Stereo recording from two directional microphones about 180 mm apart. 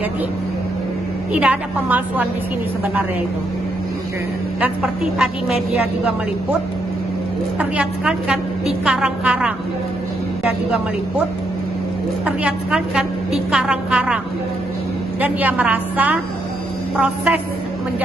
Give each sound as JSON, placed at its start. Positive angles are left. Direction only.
{"t": 1.3, "sound": "a woman's voice", "side_deg": -5}
{"t": 4.6, "sound": "a woman's voice", "side_deg": -5}
{"t": 7.5, "sound": "a woman's voice", "side_deg": -5}
{"t": 12.3, "sound": "a woman's voice", "side_deg": -5}